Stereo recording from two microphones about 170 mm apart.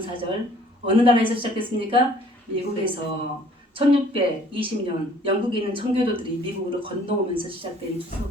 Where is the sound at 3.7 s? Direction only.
30° right (ahead or behind).